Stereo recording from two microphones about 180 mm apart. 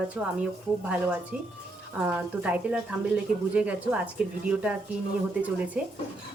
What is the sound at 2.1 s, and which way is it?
Speech, 10° right (ahead or behind).